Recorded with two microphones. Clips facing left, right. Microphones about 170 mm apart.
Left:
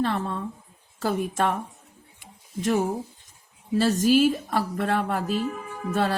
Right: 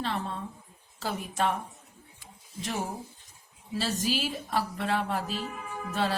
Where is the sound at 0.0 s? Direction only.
50° left (ahead or behind).